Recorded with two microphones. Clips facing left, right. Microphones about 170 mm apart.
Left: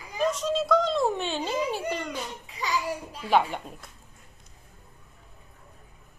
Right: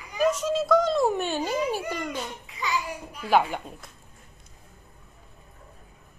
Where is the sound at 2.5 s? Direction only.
35° left (ahead or behind).